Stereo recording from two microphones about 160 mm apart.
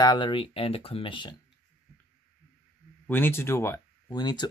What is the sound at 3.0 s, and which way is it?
Speech, 10° left (ahead or behind).